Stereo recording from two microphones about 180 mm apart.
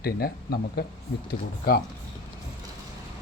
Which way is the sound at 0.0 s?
60° left (ahead or behind).